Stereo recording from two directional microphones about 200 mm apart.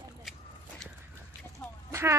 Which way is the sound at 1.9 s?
15° right (ahead or behind).